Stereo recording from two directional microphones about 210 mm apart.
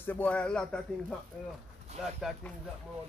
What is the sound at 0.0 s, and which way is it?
Speech, 10° left (ahead or behind).